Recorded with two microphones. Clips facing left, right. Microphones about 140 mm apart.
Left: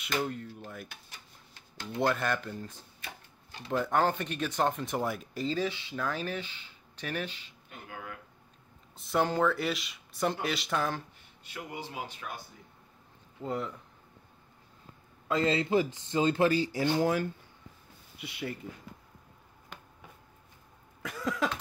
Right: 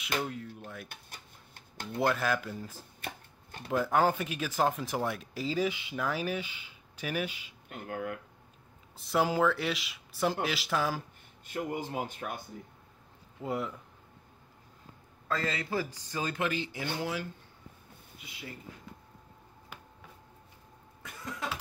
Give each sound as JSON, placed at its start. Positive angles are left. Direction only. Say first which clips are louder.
{"t": 0.0, "sound": "speech", "louder": "left 2 dB", "side_deg": 0}
{"t": 0.8, "sound": "a sound", "louder": "right 1 dB", "side_deg": -55}
{"t": 2.0, "sound": "speech", "louder": "even", "side_deg": 0}
{"t": 7.9, "sound": "speech", "louder": "right 8 dB", "side_deg": -55}
{"t": 8.9, "sound": "speech", "louder": "even", "side_deg": 0}
{"t": 11.4, "sound": "speech", "louder": "right 6 dB", "side_deg": -45}
{"t": 13.4, "sound": "speech", "louder": "even", "side_deg": -5}
{"t": 15.2, "sound": "speech", "louder": "left 6 dB", "side_deg": 20}
{"t": 18.1, "sound": "speech", "louder": "left 9 dB", "side_deg": 70}
{"t": 19.7, "sound": "a sound", "louder": "left 1 dB", "side_deg": -5}
{"t": 21.0, "sound": "cough", "louder": "left 9 dB", "side_deg": 90}